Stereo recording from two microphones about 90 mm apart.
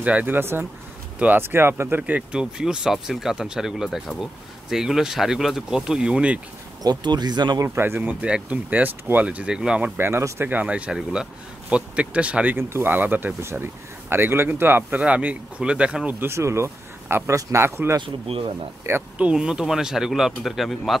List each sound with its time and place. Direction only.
0.0 s speech: 15° right (ahead or behind)
6.8 s speech: 50° right (ahead or behind)
7.6 s speech: 30° right (ahead or behind)
10.5 s speech: 15° right (ahead or behind)
12.5 s speech: 30° right (ahead or behind); by 16.2 s 10° right (ahead or behind)
16.2 s speech: 30° right (ahead or behind)
18.0 s speech: 90° right
19.1 s speech: 10° right (ahead or behind)